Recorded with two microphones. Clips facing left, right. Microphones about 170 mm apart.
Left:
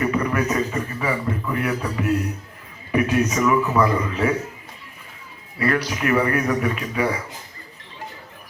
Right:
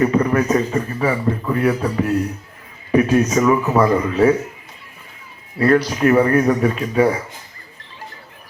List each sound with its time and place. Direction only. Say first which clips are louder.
0.0 s a man's voice: right 5 dB; 35° right (ahead or behind)
5.5 s a man's voice: right 7 dB; 35° right (ahead or behind)